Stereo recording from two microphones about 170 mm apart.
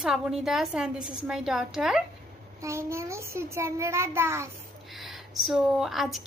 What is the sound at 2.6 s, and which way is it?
A child's voice, 15° right (ahead or behind).